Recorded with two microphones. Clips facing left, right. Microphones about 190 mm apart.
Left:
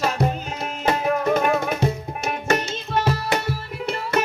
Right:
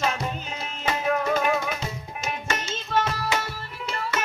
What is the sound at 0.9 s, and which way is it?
Music, 50° left (ahead or behind).